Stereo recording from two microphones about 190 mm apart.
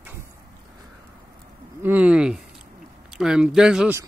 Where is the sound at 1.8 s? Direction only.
10° right (ahead or behind).